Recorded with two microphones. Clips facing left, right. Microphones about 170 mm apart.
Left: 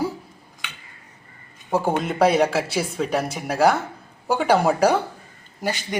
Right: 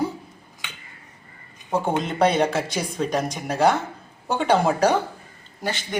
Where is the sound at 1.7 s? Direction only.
5° left (ahead or behind).